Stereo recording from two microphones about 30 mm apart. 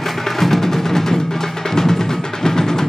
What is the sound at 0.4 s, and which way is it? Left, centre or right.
Music, centre.